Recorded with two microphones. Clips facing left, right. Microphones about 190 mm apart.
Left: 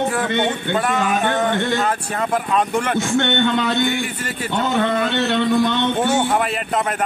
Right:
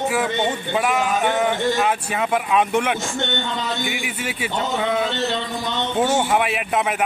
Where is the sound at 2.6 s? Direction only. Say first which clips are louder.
Right 1 dB; 5° right (ahead or behind).